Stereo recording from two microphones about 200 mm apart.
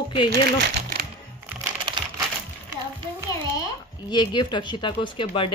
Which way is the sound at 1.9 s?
25° right (ahead or behind).